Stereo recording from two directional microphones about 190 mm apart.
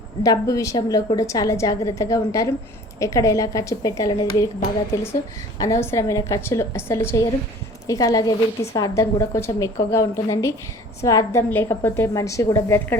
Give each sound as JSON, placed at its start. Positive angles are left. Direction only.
{"t": 0.2, "sound": "a woman's voice", "side_deg": 15}
{"t": 5.5, "sound": "a woman's voice", "side_deg": 15}